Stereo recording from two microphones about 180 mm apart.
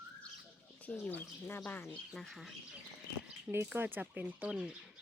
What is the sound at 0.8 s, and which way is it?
Speech, 10° left (ahead or behind).